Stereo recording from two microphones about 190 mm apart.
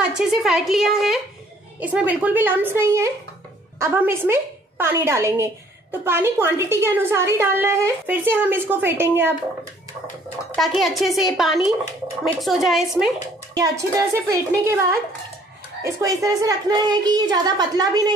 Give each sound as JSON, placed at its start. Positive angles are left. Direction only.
{"t": 0.1, "sound": "a woman's voice", "side_deg": 0}
{"t": 10.5, "sound": "a woman's voice", "side_deg": 0}
{"t": 13.6, "sound": "a woman's voice", "side_deg": -15}